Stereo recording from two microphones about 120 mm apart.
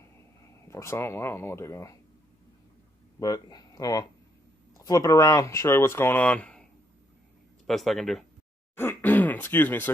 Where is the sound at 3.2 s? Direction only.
30° left (ahead or behind); by 6.6 s 10° left (ahead or behind).